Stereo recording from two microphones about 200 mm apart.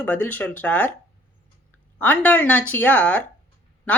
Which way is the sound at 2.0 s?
10° left (ahead or behind).